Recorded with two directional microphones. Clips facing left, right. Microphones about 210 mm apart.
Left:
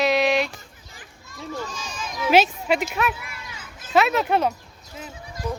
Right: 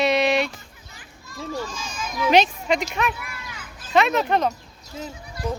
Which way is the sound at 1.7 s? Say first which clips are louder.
Right 1 dB; 35° left (ahead or behind).